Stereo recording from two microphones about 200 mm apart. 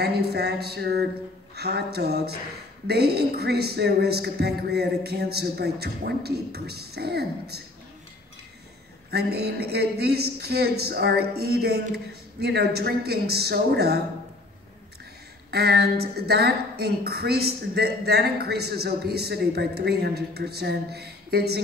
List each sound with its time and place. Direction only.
0.0 s a woman's voice: 55° right (ahead or behind)
9.1 s a woman's voice: 55° right (ahead or behind)
15.5 s a woman's voice: 55° right (ahead or behind)